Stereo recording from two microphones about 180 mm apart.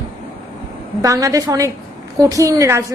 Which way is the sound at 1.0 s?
20° right (ahead or behind).